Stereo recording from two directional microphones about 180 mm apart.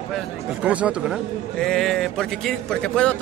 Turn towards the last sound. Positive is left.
turn(degrees=5)  # may be behind; listen again after turning